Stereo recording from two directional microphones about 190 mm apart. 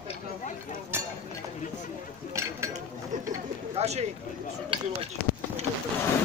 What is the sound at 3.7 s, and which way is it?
Bird, 35° right (ahead or behind).